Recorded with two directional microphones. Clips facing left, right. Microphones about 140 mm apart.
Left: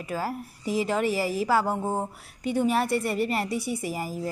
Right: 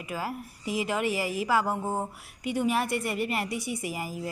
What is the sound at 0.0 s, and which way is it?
A woman's voice, 35° left (ahead or behind).